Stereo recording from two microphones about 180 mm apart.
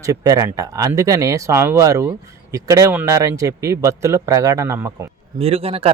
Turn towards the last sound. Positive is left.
turn(degrees=-35)  # may be behind; listen again after turning